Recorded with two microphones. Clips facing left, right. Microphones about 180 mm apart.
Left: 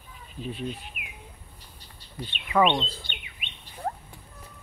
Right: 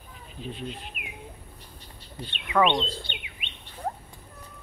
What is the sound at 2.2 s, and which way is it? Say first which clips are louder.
Speech: left 2 dB; 25° right (ahead or behind).